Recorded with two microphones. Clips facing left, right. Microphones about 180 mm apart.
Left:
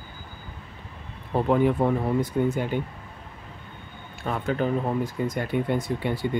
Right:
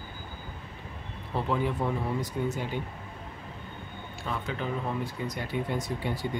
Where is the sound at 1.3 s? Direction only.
55° left (ahead or behind).